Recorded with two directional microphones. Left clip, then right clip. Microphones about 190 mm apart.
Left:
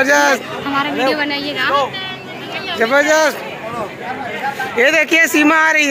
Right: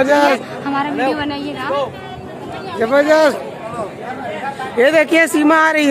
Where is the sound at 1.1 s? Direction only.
35° right (ahead or behind).